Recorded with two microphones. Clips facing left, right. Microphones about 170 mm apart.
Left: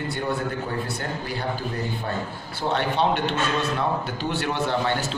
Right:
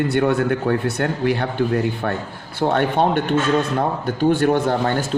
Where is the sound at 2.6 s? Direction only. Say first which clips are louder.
Right 6 dB; 55° right (ahead or behind).